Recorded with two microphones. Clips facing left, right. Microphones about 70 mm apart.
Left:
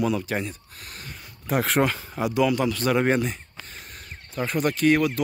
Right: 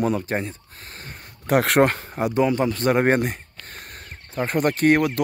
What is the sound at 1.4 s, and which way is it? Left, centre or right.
Speech, right.